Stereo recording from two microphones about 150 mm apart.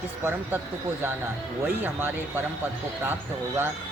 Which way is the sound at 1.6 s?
15° right (ahead or behind).